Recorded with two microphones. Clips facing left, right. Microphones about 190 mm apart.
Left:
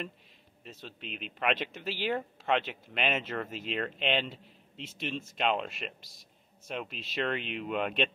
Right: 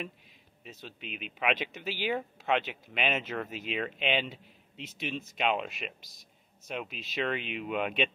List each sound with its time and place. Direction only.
0.7 s speech: 5° right (ahead or behind)
6.0 s a sound: 30° left (ahead or behind)
6.7 s speech: centre (ahead or behind)